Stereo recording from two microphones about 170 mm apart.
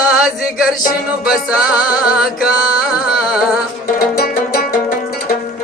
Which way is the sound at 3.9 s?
60° left (ahead or behind).